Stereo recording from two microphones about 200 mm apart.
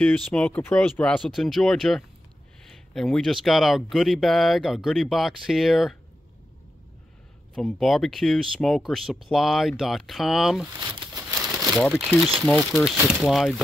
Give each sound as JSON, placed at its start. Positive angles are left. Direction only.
{"t": 0.0, "sound": "speech", "side_deg": 5}
{"t": 7.5, "sound": "speech", "side_deg": 0}
{"t": 10.8, "sound": "a sound", "side_deg": -20}
{"t": 11.9, "sound": "speech", "side_deg": -10}